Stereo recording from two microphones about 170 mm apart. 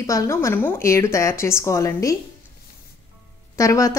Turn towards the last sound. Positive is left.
turn(degrees=20)  # may be behind; listen again after turning